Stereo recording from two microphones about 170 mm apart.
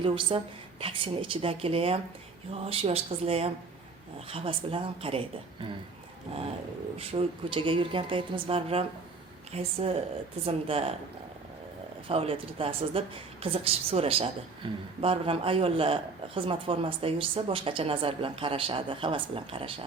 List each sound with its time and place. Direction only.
0.0 s a woman's voice: 30° right (ahead or behind)
7.0 s a woman's voice: 35° right (ahead or behind)
12.0 s a woman's voice: 35° right (ahead or behind)